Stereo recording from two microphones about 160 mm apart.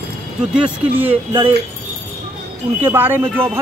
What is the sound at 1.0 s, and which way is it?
Speech, 35° right (ahead or behind).